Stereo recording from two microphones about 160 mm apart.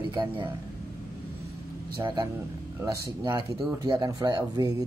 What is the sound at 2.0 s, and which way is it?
Speech, 25° right (ahead or behind).